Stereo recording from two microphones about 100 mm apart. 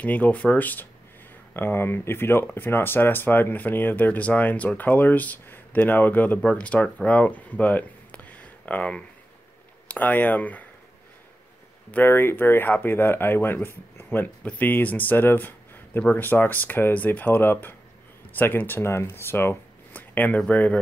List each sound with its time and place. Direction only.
0.0 s speech: 15° left (ahead or behind)
11.9 s speech: 20° left (ahead or behind)